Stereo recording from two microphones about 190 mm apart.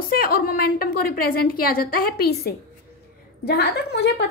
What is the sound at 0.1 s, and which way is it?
A woman's voice, 50° left (ahead or behind).